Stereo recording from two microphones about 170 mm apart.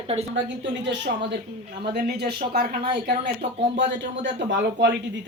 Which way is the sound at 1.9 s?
70° right (ahead or behind).